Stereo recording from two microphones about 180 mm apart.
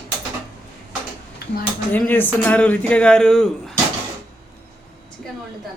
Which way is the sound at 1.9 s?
10° left (ahead or behind).